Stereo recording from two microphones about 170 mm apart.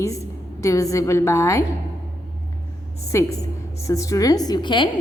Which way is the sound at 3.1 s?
20° left (ahead or behind).